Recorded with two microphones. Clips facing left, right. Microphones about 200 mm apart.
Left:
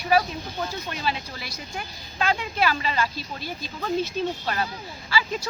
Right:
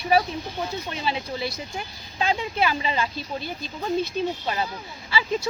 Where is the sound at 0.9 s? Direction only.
20° right (ahead or behind).